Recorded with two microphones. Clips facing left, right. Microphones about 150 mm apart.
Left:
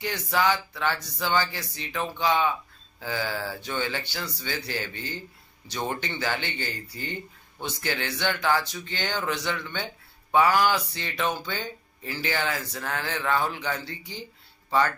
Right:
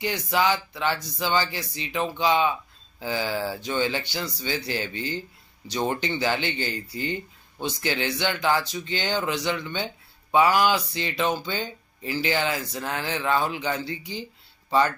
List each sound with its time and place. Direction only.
0.0 s speech: 15° right (ahead or behind)